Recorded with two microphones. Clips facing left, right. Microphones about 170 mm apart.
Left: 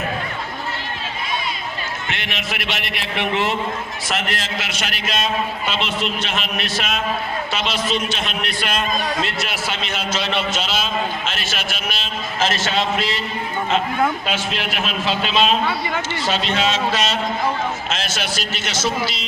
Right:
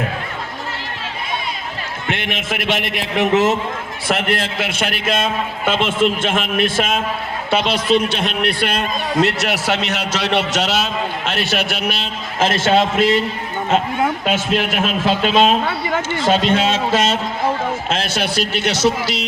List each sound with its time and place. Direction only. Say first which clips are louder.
2.0 s a man's voice: right 8 dB; 50° right (ahead or behind)
4.1 s a man's voice: right 6 dB; 55° right (ahead or behind)
9.2 s a man's voice: right 7 dB; 75° right (ahead or behind); by 13.2 s 50° right (ahead or behind)
14.3 s a man's voice: right 6 dB; 50° right (ahead or behind); by 19.2 s 70° right (ahead or behind)